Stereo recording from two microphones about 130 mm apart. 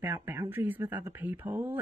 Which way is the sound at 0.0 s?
15° right (ahead or behind).